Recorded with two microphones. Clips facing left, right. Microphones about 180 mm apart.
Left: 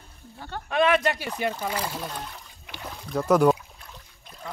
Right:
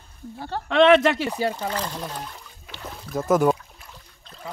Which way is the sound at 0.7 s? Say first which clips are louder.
Right 6 dB; 90° right.